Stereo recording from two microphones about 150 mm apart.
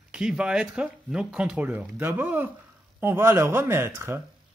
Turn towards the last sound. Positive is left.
turn(degrees=-15)  # may be behind; listen again after turning